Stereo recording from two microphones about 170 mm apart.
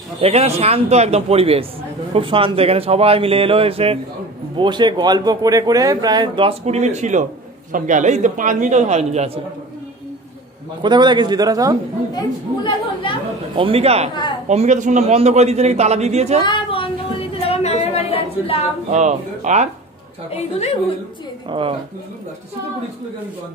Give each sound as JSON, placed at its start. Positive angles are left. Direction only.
{"t": 0.2, "sound": "a man's voice", "side_deg": -35}
{"t": 10.8, "sound": "speech", "side_deg": -25}
{"t": 12.1, "sound": "a woman's voice", "side_deg": 25}
{"t": 13.6, "sound": "a man's voice", "side_deg": -35}
{"t": 16.4, "sound": "a sound", "side_deg": 30}
{"t": 18.9, "sound": "speech", "side_deg": -45}
{"t": 20.3, "sound": "a woman's voice", "side_deg": 40}
{"t": 21.5, "sound": "a man's voice", "side_deg": -30}